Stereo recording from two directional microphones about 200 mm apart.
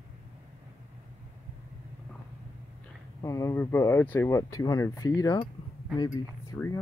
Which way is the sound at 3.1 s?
15° left (ahead or behind).